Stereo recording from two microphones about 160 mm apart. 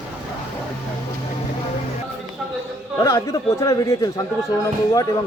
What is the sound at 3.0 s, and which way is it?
Speech, 20° left (ahead or behind).